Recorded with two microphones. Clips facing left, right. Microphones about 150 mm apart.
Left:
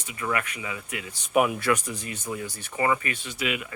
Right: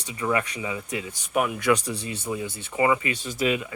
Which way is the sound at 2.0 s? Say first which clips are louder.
Right 3 dB; 30° right (ahead or behind).